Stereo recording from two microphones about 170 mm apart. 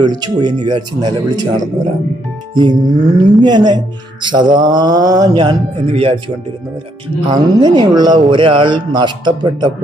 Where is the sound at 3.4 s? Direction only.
25° right (ahead or behind).